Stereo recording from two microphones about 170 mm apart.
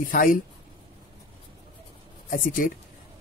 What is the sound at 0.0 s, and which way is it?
Speech, 55° left (ahead or behind).